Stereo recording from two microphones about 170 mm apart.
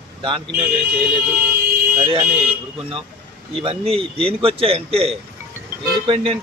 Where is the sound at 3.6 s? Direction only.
35° right (ahead or behind).